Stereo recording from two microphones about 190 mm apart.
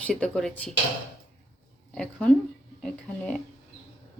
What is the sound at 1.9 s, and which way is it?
Speech, 5° left (ahead or behind).